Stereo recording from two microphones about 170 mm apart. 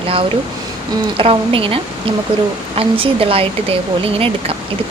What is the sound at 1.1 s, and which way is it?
Speech, 30° right (ahead or behind).